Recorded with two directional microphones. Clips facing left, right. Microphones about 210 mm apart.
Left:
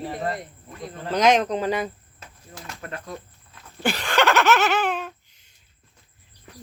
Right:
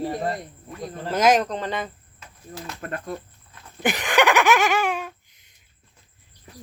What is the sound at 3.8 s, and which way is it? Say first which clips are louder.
Giggle: right 1 dB; 15° right (ahead or behind).